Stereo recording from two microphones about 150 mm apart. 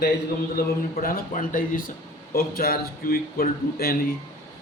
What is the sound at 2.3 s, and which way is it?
A man's voice, 80° left.